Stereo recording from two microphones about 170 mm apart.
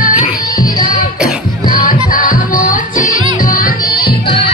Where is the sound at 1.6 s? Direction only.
55° left (ahead or behind).